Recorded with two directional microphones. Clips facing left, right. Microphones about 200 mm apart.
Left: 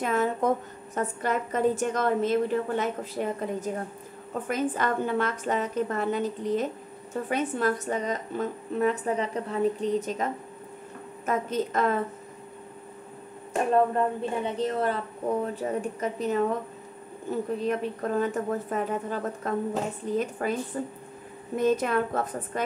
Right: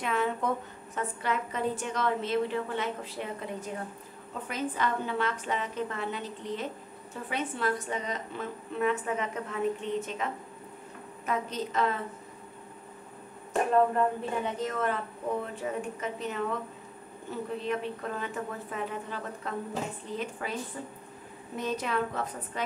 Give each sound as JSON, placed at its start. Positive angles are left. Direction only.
{"t": 0.0, "sound": "a woman's voice", "side_deg": 45}
{"t": 13.7, "sound": "a woman's voice", "side_deg": 30}
{"t": 17.6, "sound": "a woman's voice", "side_deg": 40}